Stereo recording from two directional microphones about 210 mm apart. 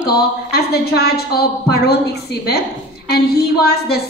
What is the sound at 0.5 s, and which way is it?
A woman's voice, 50° left (ahead or behind).